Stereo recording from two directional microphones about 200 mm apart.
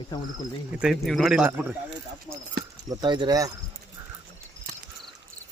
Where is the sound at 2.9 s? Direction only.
20° right (ahead or behind).